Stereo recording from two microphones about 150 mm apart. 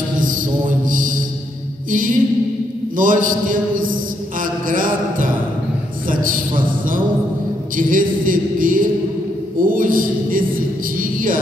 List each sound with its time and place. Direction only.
0.2 s music: 60° right (ahead or behind)
1.9 s mantra: 65° right (ahead or behind)
6.0 s a sound: 65° right (ahead or behind)